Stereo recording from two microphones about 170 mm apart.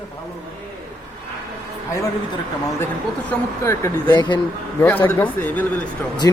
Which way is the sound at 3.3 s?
15° left (ahead or behind).